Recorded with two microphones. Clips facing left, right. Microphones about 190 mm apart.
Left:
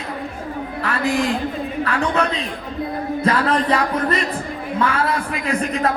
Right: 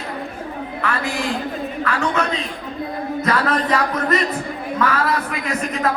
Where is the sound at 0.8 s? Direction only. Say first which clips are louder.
Right 2 dB; 35° left (ahead or behind).